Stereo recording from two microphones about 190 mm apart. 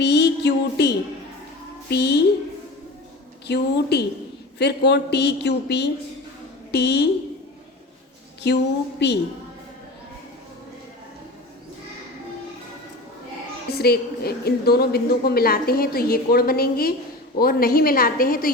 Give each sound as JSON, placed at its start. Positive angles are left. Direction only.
{"t": 0.0, "sound": "music", "side_deg": 60}
{"t": 1.9, "sound": "a woman's voice", "side_deg": 60}
{"t": 3.4, "sound": "a woman's voice", "side_deg": 60}
{"t": 8.4, "sound": "a woman's voice", "side_deg": 60}
{"t": 13.7, "sound": "a woman's voice", "side_deg": 55}